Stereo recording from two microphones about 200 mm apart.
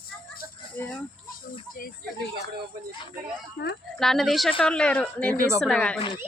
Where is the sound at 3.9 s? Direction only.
Centre (ahead or behind).